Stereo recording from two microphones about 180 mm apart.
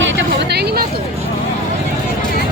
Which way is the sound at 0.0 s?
90° right.